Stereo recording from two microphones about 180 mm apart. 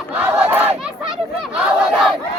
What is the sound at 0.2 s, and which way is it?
Battle cry, 5° right (ahead or behind).